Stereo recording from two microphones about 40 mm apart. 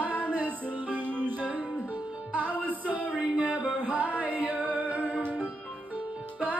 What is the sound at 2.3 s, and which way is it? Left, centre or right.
Music, right.